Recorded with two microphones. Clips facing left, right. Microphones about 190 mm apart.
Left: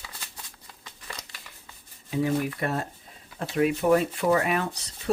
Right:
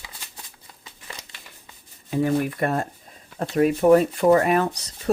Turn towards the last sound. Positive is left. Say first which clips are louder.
# right 6 dB
turn(degrees=-40)  # may be behind; listen again after turning